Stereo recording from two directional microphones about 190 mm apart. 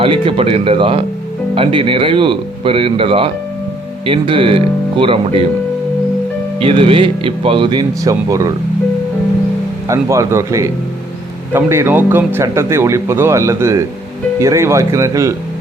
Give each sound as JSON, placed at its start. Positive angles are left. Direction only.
{"t": 0.0, "sound": "speech", "side_deg": -30}
{"t": 6.6, "sound": "speech", "side_deg": -30}
{"t": 9.9, "sound": "speech", "side_deg": -15}